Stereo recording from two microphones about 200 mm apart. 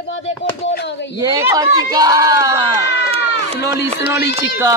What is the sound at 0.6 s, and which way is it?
Speech, 60° left (ahead or behind).